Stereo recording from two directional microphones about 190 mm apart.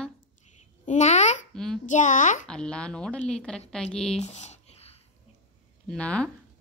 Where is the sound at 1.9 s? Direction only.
40° left (ahead or behind).